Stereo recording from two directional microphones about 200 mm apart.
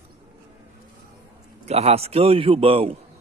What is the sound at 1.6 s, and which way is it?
A man's voice, 30° right (ahead or behind).